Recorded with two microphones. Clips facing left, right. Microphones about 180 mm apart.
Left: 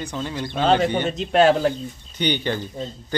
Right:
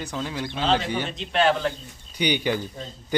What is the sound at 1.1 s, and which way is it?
Speech, 40° left (ahead or behind).